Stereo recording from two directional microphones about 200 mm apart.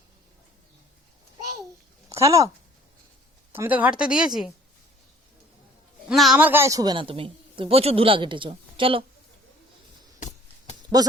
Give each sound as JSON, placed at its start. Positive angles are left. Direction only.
{"t": 2.0, "sound": "speech", "side_deg": -15}
{"t": 3.5, "sound": "speech", "side_deg": -10}
{"t": 6.1, "sound": "speech", "side_deg": 0}
{"t": 10.2, "sound": "a sound", "side_deg": 35}